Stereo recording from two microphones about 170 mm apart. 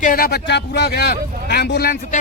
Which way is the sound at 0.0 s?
55° left (ahead or behind).